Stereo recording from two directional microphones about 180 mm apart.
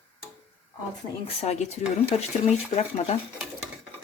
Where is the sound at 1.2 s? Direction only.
40° left (ahead or behind).